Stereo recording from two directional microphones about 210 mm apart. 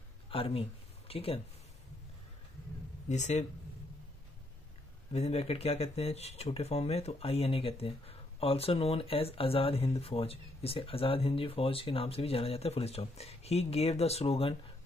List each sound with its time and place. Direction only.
0.3 s speech: 25° left (ahead or behind)
3.1 s speech: 35° left (ahead or behind)
5.1 s speech: 30° left (ahead or behind)